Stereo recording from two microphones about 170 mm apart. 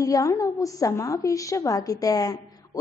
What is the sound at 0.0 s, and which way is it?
A woman's voice, 20° left (ahead or behind).